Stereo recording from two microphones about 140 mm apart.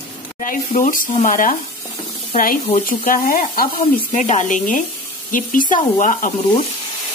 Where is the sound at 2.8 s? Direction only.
85° left.